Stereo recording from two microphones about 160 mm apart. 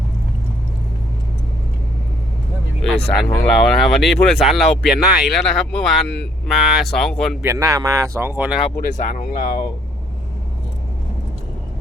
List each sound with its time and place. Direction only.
2.8 s speech: 5° left (ahead or behind)
7.4 s speech: 20° right (ahead or behind)
8.7 s speech: 65° left (ahead or behind)